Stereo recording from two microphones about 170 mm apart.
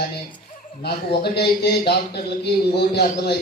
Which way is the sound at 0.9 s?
70° left (ahead or behind).